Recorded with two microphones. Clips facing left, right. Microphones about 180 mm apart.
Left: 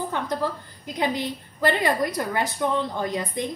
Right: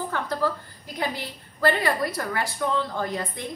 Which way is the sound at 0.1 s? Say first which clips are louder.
Even; 20° left (ahead or behind).